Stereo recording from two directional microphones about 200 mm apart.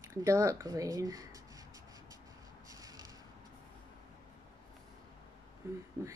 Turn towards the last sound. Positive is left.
turn(degrees=-15)  # may be behind; listen again after turning